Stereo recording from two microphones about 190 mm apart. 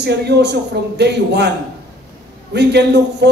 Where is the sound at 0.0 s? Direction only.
60° right (ahead or behind).